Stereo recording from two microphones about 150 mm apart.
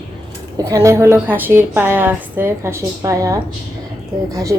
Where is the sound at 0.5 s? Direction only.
20° right (ahead or behind).